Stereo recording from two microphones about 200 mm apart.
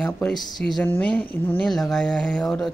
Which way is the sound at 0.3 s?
20° left (ahead or behind).